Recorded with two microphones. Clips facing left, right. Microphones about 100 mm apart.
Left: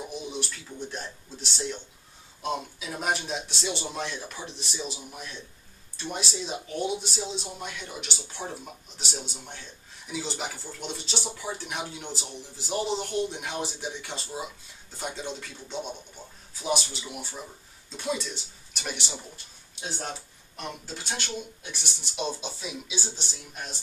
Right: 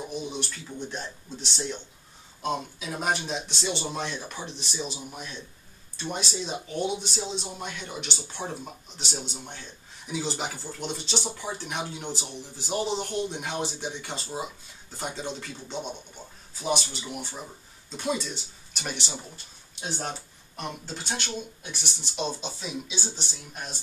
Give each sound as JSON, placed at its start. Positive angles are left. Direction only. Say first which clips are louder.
{"t": 0.0, "sound": "a sound", "louder": "right 2 dB", "side_deg": 0}
{"t": 0.7, "sound": "speech", "louder": "right 1 dB", "side_deg": 0}
{"t": 20.5, "sound": "speech", "louder": "right 2 dB", "side_deg": 0}